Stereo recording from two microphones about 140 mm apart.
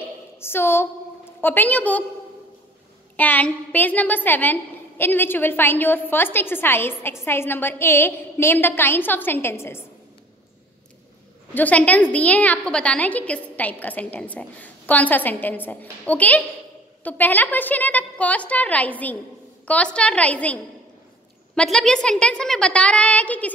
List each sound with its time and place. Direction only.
0.4 s a woman's voice: 15° left (ahead or behind)
3.2 s a woman's voice: 10° left (ahead or behind)
11.5 s a woman's voice: 10° left (ahead or behind)